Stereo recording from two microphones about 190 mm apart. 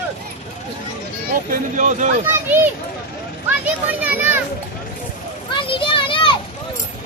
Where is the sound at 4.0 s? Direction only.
10° right (ahead or behind).